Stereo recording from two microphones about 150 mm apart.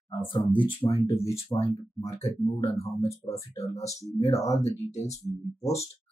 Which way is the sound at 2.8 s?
40° left (ahead or behind).